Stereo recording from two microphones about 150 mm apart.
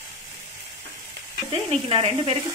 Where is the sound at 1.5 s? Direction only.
35° right (ahead or behind).